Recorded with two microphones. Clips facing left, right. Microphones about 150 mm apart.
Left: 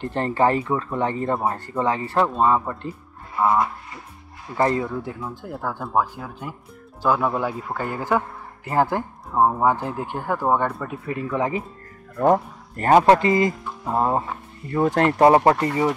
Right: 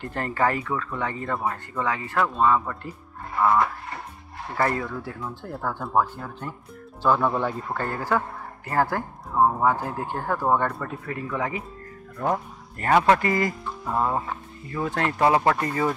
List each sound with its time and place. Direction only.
0.0 s speech: 30° left (ahead or behind)
4.6 s speech: 20° left (ahead or behind)
5.2 s speech: 10° left (ahead or behind)
11.3 s speech: 25° left (ahead or behind)
12.2 s speech: 40° left (ahead or behind)
13.2 s speech: 20° left (ahead or behind)
14.7 s speech: 40° left (ahead or behind)